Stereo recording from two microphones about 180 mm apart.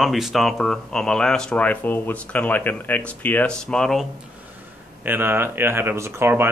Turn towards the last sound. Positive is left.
turn(degrees=-15)  # may be behind; listen again after turning